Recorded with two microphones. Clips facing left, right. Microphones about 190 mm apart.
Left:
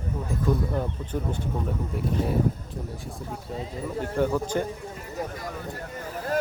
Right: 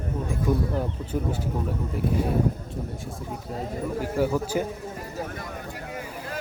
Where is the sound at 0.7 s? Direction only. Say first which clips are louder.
Right 1 dB; 10° right (ahead or behind).